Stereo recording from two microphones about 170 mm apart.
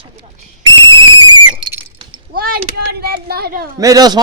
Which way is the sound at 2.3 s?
60° right (ahead or behind).